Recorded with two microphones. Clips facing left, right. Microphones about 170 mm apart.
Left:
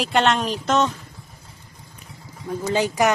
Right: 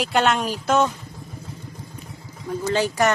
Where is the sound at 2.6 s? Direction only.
15° left (ahead or behind).